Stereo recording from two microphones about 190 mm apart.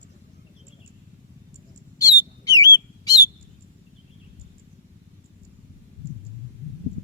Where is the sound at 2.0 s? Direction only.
20° left (ahead or behind).